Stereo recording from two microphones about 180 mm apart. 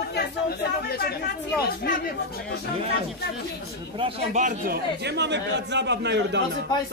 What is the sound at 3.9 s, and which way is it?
Speech, 30° right (ahead or behind).